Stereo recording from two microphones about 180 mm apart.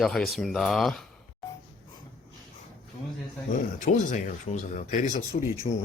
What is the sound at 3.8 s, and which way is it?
Speech, 45° left (ahead or behind).